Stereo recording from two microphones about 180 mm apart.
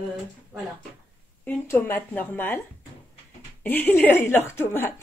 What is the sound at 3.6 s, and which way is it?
Speech, 10° left (ahead or behind).